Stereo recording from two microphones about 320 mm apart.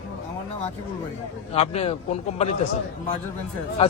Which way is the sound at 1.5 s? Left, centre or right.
Centre.